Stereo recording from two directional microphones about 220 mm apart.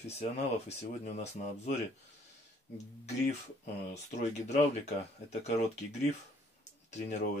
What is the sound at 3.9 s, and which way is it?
Speech, 30° left (ahead or behind).